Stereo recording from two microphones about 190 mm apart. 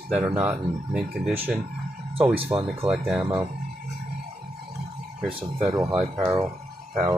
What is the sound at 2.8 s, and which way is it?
Speech, 5° right (ahead or behind).